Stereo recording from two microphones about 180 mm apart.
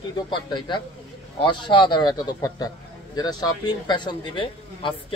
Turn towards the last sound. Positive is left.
turn(degrees=30)  # may be behind; listen again after turning